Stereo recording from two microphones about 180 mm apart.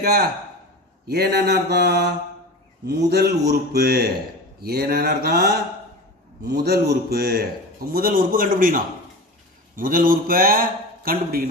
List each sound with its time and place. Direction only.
0.0 s a man's voice: 60° right (ahead or behind)